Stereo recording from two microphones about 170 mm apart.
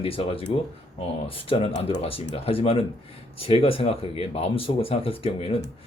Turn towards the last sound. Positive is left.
turn(degrees=35)  # may be behind; listen again after turning